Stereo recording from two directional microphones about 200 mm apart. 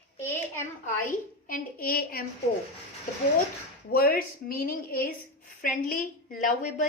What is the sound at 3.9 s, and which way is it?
A woman's voice, 45° left (ahead or behind).